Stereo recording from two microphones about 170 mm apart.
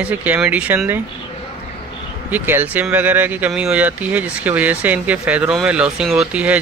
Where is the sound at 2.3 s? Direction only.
10° right (ahead or behind).